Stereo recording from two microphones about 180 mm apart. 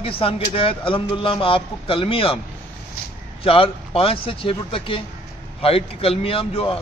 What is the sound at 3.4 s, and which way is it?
A man's voice, 30° left (ahead or behind).